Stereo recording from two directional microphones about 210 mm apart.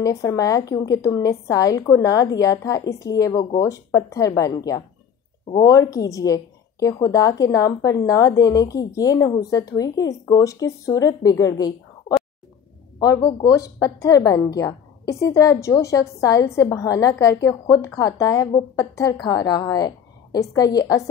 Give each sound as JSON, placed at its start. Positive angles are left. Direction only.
{"t": 0.0, "sound": "a woman's voice", "side_deg": 15}
{"t": 13.0, "sound": "a woman's voice", "side_deg": 15}